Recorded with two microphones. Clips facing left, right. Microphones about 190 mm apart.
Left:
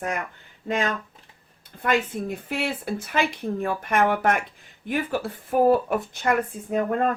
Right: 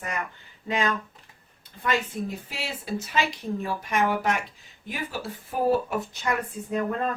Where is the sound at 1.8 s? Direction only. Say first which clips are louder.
Left 3 dB; 55° left (ahead or behind).